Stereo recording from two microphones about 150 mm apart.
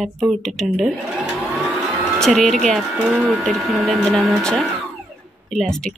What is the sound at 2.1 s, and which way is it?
Speech, centre (ahead or behind).